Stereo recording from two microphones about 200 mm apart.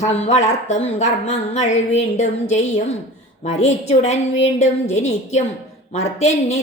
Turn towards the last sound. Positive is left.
turn(degrees=30)  # may be behind; listen again after turning